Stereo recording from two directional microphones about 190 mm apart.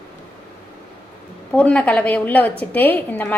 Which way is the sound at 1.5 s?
5° left (ahead or behind).